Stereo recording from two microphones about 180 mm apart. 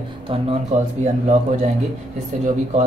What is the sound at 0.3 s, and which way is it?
Speech, 30° right (ahead or behind).